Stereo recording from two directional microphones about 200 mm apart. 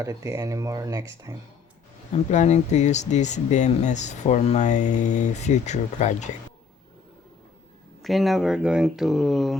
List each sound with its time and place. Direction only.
0.0 s speech: 15° right (ahead or behind)
2.1 s speech: 35° left (ahead or behind)
8.0 s speech: centre (ahead or behind)